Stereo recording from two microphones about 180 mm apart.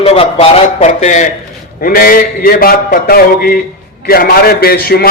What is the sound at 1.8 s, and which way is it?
A man's voice, 55° left (ahead or behind).